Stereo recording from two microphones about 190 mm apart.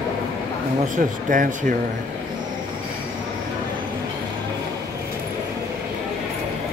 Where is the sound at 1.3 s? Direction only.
40° right (ahead or behind).